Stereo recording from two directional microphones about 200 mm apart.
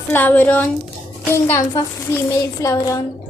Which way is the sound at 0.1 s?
10° left (ahead or behind).